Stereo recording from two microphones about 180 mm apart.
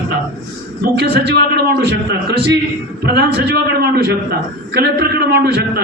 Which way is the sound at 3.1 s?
70° right (ahead or behind).